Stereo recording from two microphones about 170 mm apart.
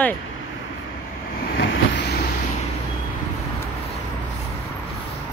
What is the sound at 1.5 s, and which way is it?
Vehicle, 80° left.